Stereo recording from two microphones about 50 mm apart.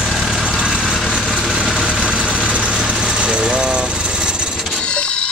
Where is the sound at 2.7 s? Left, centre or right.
Centre.